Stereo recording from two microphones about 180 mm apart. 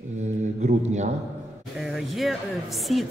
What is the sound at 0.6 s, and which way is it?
Speech, 40° right (ahead or behind).